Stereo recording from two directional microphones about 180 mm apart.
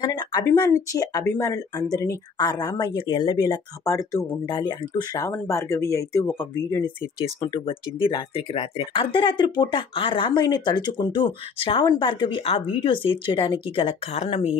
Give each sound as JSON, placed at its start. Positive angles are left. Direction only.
{"t": 0.0, "sound": "speech", "side_deg": 20}
{"t": 7.4, "sound": "speech", "side_deg": 30}